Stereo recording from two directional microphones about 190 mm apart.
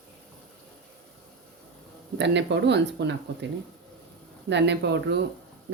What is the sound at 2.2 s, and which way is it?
Speech, 65° right (ahead or behind).